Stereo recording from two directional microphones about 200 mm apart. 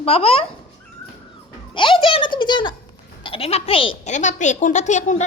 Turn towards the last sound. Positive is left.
turn(degrees=35)  # may be behind; listen again after turning